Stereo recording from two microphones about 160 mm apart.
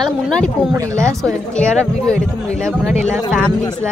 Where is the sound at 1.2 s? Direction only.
5° left (ahead or behind).